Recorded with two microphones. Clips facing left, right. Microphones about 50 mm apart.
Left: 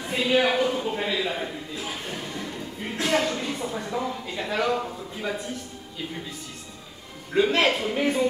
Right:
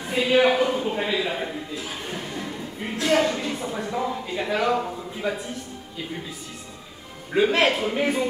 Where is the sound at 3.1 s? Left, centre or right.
Centre.